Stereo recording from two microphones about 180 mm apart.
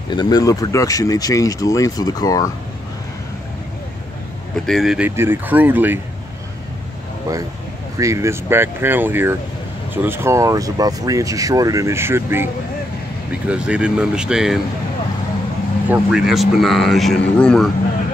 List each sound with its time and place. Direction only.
0.1 s speech: 20° left (ahead or behind)
4.6 s speech: centre (ahead or behind)
8.0 s speech: 15° right (ahead or behind)
13.5 s speech: 5° right (ahead or behind)
15.9 s speech: 5° right (ahead or behind)